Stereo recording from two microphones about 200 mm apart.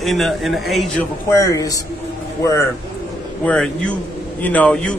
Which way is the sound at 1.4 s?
15° left (ahead or behind).